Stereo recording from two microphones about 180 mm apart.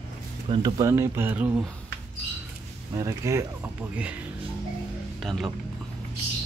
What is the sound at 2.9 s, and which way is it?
Speech, 15° right (ahead or behind).